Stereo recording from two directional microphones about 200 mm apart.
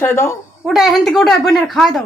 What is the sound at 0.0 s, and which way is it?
Speech, 10° left (ahead or behind).